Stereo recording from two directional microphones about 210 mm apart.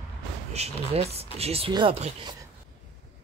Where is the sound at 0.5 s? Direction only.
30° right (ahead or behind).